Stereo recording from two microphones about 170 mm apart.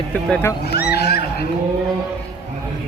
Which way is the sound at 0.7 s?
70° left (ahead or behind).